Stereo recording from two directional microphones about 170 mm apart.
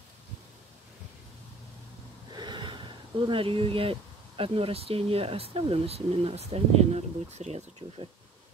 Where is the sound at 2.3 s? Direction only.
25° right (ahead or behind).